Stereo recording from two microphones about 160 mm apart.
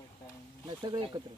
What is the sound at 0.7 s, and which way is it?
Speech, 25° right (ahead or behind).